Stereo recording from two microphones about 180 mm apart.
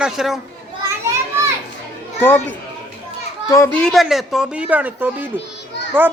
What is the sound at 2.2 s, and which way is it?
A child's voice, 10° left (ahead or behind).